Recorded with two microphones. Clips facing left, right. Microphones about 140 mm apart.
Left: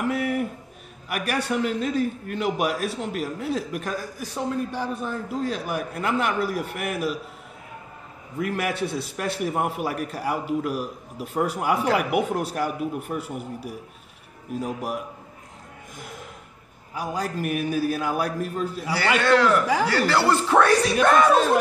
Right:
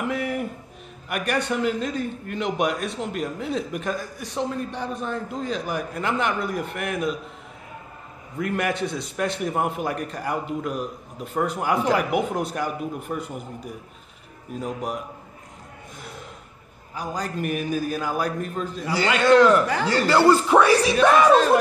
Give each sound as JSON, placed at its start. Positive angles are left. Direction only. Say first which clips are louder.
{"t": 0.0, "sound": "a sound", "louder": "left 2 dB", "side_deg": 0}
{"t": 1.0, "sound": "a man's voice", "louder": "right 1 dB", "side_deg": 5}
{"t": 8.4, "sound": "a man's voice", "louder": "right 1 dB", "side_deg": 5}
{"t": 16.9, "sound": "a man's voice", "louder": "left 1 dB", "side_deg": 10}
{"t": 19.9, "sound": "speech", "louder": "right 8 dB", "side_deg": -15}